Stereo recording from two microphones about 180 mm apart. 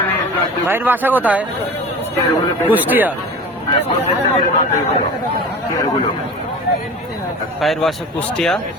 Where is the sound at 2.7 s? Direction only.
10° right (ahead or behind).